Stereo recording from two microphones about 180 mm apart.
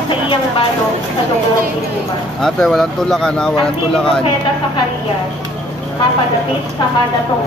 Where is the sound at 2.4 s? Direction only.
Centre (ahead or behind).